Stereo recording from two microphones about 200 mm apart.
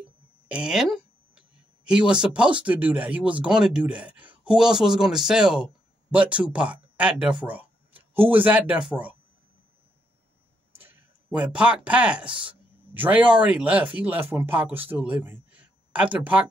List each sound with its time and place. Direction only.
0.5 s a sound: 5° right (ahead or behind)
1.9 s speech: 5° right (ahead or behind)
11.2 s speech: 5° right (ahead or behind)